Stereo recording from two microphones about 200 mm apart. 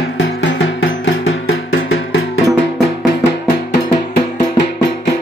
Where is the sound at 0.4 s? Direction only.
65° left (ahead or behind); by 2.2 s 80° left.